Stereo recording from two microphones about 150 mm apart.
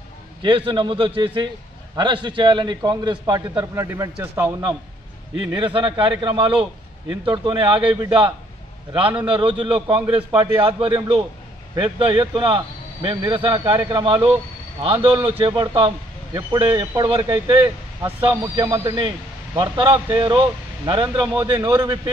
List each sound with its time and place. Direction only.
0.4 s a man's voice: 35° right (ahead or behind)
3.7 s speech: 20° right (ahead or behind)
5.5 s a man's voice: 35° right (ahead or behind)
18.6 s a man's voice: 25° right (ahead or behind)